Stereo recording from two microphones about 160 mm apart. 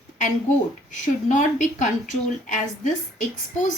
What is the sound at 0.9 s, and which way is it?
Speech, 50° left (ahead or behind).